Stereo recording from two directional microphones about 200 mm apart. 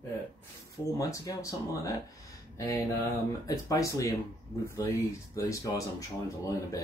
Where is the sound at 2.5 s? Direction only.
15° left (ahead or behind).